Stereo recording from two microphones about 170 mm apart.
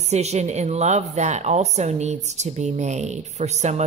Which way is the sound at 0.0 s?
40° right (ahead or behind).